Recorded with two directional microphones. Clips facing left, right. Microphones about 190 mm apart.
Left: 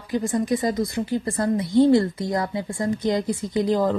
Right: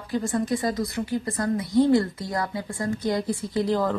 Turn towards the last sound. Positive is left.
turn(degrees=20)  # may be behind; listen again after turning